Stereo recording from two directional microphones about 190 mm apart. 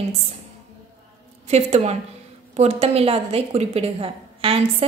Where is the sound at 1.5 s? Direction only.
35° right (ahead or behind).